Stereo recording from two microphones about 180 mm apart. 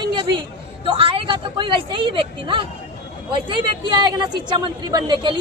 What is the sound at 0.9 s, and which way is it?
Speech, 30° right (ahead or behind).